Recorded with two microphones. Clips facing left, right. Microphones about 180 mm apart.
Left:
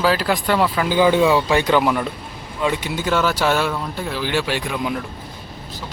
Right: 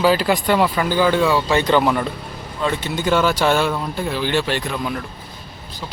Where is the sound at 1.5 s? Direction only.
5° left (ahead or behind).